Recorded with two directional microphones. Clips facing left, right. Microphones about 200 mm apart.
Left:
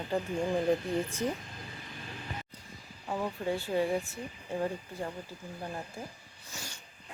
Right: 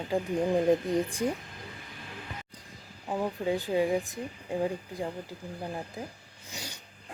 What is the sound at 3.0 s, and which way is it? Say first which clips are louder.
Speech: right 3 dB; 15° right (ahead or behind).